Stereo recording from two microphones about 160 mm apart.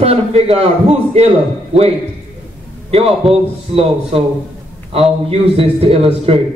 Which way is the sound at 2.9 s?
35° right (ahead or behind).